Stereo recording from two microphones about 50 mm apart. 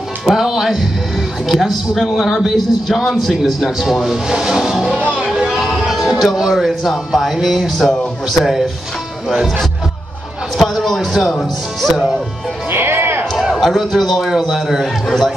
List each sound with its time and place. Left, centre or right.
0.2 s a man's voice: centre
5.2 s a sound: centre
7.3 s speech: centre
10.6 s a sound: centre
11.2 s speech: centre
12.7 s music: right
13.4 s a man's voice: centre